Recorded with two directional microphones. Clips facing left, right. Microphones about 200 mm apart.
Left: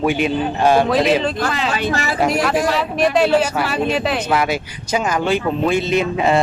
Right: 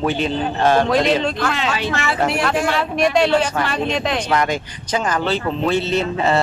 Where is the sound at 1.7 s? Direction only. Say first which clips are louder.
Left 1 dB; 40° left (ahead or behind).